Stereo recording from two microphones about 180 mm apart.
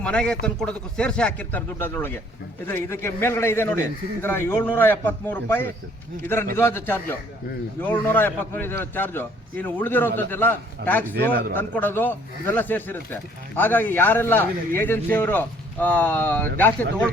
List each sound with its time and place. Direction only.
0.0 s a man's voice: 5° left (ahead or behind)
11.2 s a man's voice: 60° right (ahead or behind)
11.5 s a man's voice: 10° left (ahead or behind)